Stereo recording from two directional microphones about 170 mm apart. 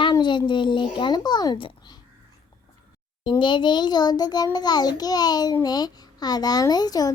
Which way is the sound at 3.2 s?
25° left (ahead or behind).